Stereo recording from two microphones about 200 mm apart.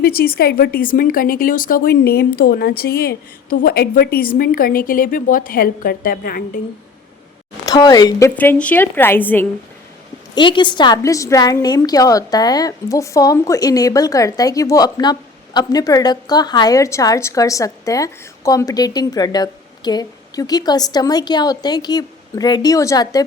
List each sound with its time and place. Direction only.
0.0 s speech: 50° left (ahead or behind)
7.6 s a woman's voice: 20° left (ahead or behind)
8.4 s a woman's voice: 5° left (ahead or behind)
10.3 s a woman's voice: 25° left (ahead or behind)